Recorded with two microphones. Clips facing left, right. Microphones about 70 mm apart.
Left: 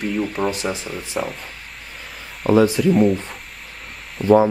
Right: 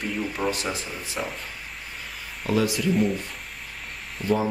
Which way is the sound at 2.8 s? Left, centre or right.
Left.